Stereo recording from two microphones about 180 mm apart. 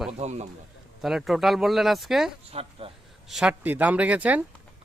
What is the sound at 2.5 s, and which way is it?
Speech, 35° right (ahead or behind).